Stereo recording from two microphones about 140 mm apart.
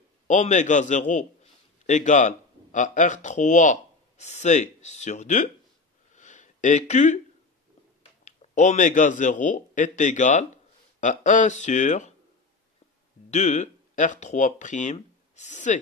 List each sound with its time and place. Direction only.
0.3 s a man's voice: 60° left (ahead or behind)
6.1 s a sound: 60° left (ahead or behind)
8.3 s speech: 55° left (ahead or behind)
13.3 s speech: 55° left (ahead or behind)